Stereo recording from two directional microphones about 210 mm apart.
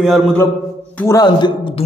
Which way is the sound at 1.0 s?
15° left (ahead or behind).